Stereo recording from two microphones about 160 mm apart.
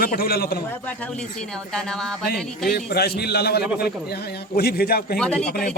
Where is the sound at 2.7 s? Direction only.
80° left.